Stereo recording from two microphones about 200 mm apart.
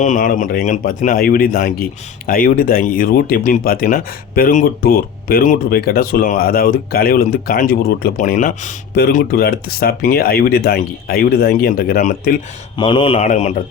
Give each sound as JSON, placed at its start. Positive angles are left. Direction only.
{"t": 0.0, "sound": "speech", "side_deg": 40}
{"t": 12.7, "sound": "speech", "side_deg": 25}
{"t": 13.1, "sound": "speech", "side_deg": 35}